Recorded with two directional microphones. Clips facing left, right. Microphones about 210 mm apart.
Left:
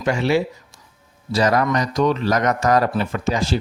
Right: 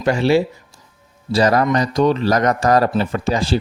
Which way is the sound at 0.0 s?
35° right (ahead or behind).